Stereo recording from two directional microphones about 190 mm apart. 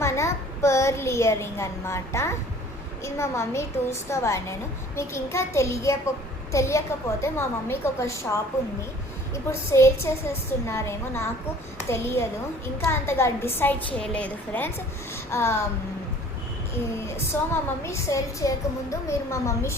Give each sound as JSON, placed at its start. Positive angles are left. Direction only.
{"t": 0.0, "sound": "a child's voice", "side_deg": 15}
{"t": 9.3, "sound": "a child's voice", "side_deg": 15}
{"t": 15.1, "sound": "a sound", "side_deg": 15}
{"t": 17.5, "sound": "a child's voice", "side_deg": 15}